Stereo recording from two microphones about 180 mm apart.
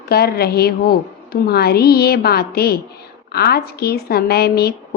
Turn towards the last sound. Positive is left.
turn(degrees=60)  # may be behind; listen again after turning